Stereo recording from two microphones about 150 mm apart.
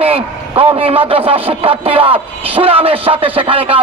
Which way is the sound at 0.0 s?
40° right (ahead or behind).